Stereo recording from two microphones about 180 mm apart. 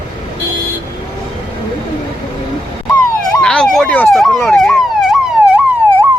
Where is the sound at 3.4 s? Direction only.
5° left (ahead or behind).